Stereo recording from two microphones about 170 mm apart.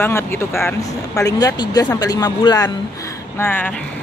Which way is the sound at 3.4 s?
10° left (ahead or behind).